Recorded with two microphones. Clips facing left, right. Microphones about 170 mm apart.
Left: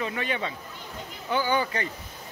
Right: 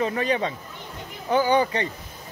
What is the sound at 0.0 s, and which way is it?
Speech, 35° right (ahead or behind).